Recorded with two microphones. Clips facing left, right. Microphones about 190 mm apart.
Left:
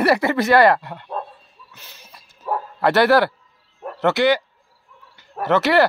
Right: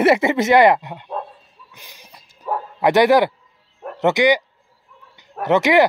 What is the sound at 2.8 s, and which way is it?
Speech, 15° right (ahead or behind).